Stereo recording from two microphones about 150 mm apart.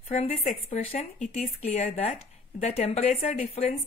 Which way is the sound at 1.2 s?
55° left (ahead or behind).